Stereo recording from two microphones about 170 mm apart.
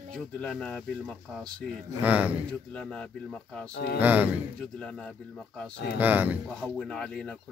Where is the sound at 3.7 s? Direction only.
70° left (ahead or behind).